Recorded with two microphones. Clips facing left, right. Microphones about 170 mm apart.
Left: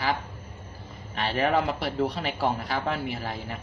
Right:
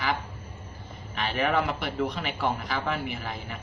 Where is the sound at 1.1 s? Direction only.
35° left (ahead or behind).